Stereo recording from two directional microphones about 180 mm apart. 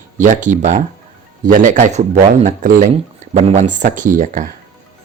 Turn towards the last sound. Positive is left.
turn(degrees=-45)  # may be behind; listen again after turning